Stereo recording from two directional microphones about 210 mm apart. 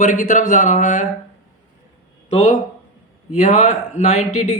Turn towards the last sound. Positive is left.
turn(degrees=35)  # may be behind; listen again after turning